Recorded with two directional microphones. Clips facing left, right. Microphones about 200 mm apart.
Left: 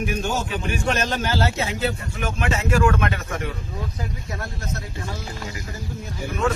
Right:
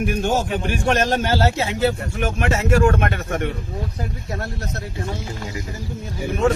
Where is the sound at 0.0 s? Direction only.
55° right (ahead or behind).